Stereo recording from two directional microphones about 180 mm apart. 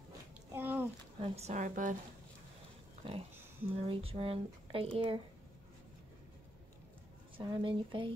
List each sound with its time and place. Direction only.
0.5 s a sound: 10° right (ahead or behind)
1.2 s a woman's voice: 35° right (ahead or behind)
3.0 s speech: 30° right (ahead or behind)
7.3 s speech: 25° right (ahead or behind)